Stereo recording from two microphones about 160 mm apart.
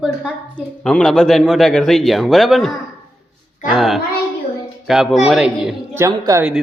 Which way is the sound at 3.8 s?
Centre (ahead or behind).